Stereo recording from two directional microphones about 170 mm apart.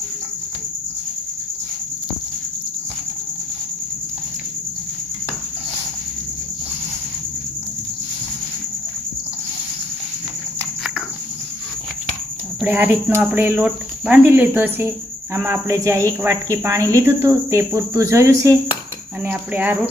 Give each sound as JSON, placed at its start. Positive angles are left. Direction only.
{"t": 12.5, "sound": "speech", "side_deg": -10}